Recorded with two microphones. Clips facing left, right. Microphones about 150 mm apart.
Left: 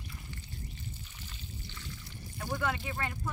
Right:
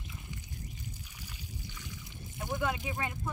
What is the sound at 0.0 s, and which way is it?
Trickle, 20° right (ahead or behind).